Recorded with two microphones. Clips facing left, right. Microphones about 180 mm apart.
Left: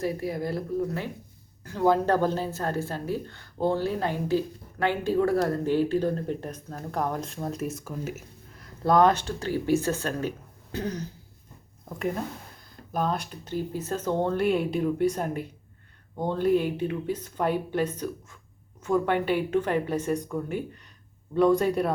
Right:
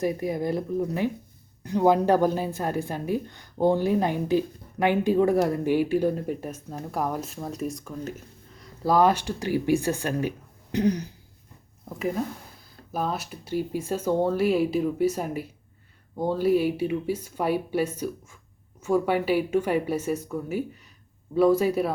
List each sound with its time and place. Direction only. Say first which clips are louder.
0.0 s a woman's voice: right 3 dB; 20° right (ahead or behind)
11.9 s a woman's voice: right 2 dB; centre (ahead or behind)